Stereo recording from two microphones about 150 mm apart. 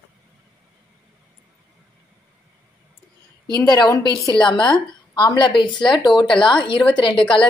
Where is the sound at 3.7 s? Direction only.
25° left (ahead or behind).